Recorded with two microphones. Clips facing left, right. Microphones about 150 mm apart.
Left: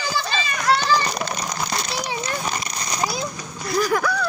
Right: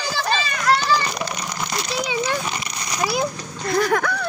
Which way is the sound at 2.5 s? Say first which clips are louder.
Left 1 dB; 35° left (ahead or behind).